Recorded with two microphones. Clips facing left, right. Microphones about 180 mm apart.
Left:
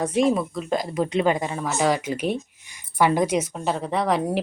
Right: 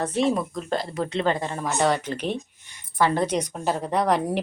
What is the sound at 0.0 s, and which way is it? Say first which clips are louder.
Speech: left 2 dB; 10° left (ahead or behind).